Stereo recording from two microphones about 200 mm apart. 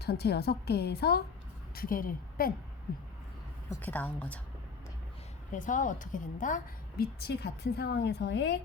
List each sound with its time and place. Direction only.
0.0 s a woman's voice: 55° left (ahead or behind)
3.7 s a woman's voice: 10° left (ahead or behind)
5.5 s a woman's voice: 40° left (ahead or behind); by 8.6 s 55° left (ahead or behind)